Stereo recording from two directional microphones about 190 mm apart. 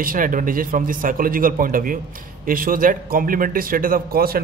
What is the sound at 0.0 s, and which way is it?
A man's voice, 45° right (ahead or behind).